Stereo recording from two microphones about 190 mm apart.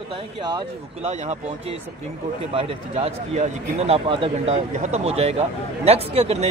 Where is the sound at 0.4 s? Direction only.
20° right (ahead or behind).